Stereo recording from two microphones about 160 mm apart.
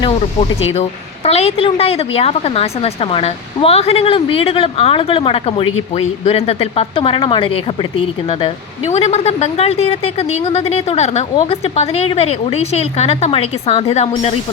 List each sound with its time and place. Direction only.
0.7 s a woman's voice: 40° left (ahead or behind)